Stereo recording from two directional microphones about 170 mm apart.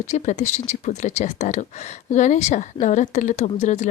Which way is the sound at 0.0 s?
45° left (ahead or behind).